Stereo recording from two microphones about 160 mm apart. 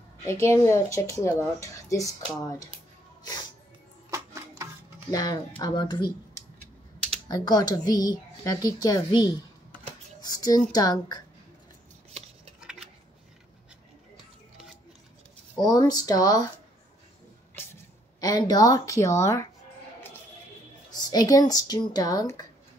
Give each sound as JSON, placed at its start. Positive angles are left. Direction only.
{"t": 0.2, "sound": "speech", "side_deg": 20}
{"t": 4.1, "sound": "music", "side_deg": -20}
{"t": 5.1, "sound": "speech", "side_deg": 25}
{"t": 7.2, "sound": "speech", "side_deg": 25}
{"t": 12.5, "sound": "dishes", "side_deg": -5}
{"t": 15.6, "sound": "speech", "side_deg": 25}
{"t": 18.2, "sound": "speech", "side_deg": 25}
{"t": 20.9, "sound": "speech", "side_deg": 25}